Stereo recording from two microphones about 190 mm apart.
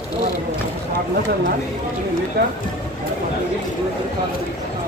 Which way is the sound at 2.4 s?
55° right (ahead or behind).